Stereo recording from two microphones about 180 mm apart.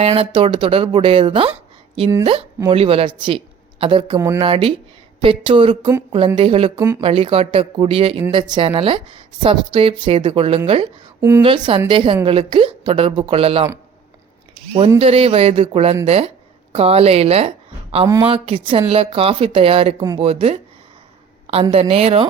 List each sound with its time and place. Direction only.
0.0 s a woman's voice: 30° right (ahead or behind)
11.2 s a woman's voice: 15° right (ahead or behind)
11.4 s a woman's voice: 25° right (ahead or behind)
14.9 s speech: 35° right (ahead or behind)